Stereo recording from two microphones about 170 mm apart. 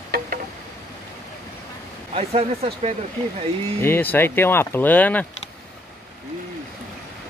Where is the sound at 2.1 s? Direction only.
35° right (ahead or behind).